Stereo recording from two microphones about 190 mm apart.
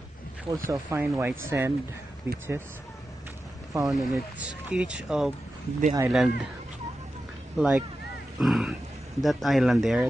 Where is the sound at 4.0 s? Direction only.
5° right (ahead or behind).